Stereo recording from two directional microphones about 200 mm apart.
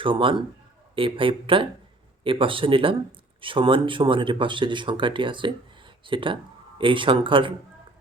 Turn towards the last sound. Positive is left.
turn(degrees=-25)  # may be behind; listen again after turning